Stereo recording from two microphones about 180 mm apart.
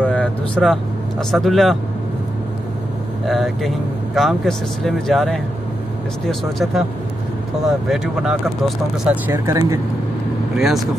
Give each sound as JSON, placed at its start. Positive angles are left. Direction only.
{"t": 0.0, "sound": "vehicle", "side_deg": 5}
{"t": 1.3, "sound": "speech", "side_deg": 0}
{"t": 3.3, "sound": "speech", "side_deg": 0}
{"t": 9.3, "sound": "speech", "side_deg": -15}
{"t": 10.6, "sound": "speech", "side_deg": 0}